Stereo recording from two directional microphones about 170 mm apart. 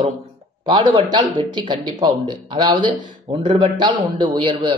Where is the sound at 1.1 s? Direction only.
25° right (ahead or behind).